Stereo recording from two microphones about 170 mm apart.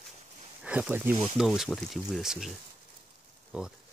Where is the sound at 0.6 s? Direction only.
5° right (ahead or behind).